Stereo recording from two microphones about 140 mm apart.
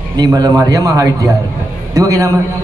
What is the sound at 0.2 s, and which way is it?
A man's voice, 25° right (ahead or behind).